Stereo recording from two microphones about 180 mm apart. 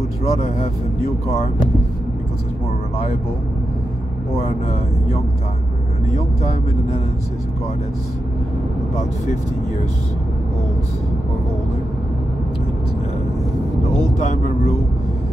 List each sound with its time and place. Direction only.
0.2 s speech: 35° left (ahead or behind)
14.1 s speech: 40° left (ahead or behind)